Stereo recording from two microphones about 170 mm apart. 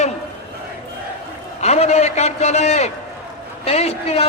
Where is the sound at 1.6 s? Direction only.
40° left (ahead or behind).